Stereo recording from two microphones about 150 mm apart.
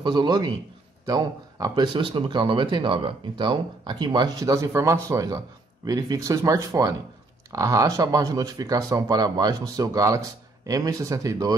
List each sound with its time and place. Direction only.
0.0 s speech: 30° right (ahead or behind)